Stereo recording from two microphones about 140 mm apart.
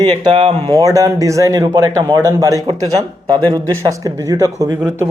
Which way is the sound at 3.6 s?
25° right (ahead or behind).